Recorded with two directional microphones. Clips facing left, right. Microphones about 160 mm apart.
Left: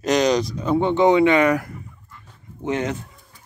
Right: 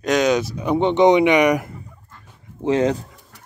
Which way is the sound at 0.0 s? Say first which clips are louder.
Even; centre (ahead or behind).